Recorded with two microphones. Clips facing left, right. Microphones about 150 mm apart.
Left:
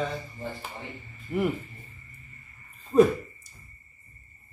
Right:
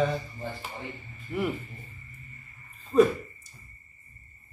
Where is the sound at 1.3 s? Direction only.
5° left (ahead or behind).